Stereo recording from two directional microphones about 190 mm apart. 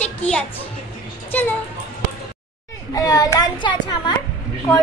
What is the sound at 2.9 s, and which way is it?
A child's voice, 20° left (ahead or behind).